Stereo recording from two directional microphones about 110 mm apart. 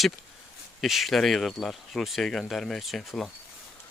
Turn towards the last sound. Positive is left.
turn(degrees=5)  # may be behind; listen again after turning